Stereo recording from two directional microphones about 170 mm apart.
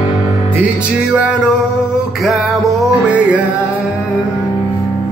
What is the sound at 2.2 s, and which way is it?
Music, centre (ahead or behind).